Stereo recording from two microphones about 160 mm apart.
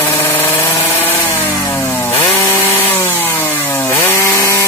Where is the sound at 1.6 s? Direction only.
15° left (ahead or behind).